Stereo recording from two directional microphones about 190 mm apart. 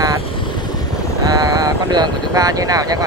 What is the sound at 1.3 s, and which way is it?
Speech, 20° right (ahead or behind).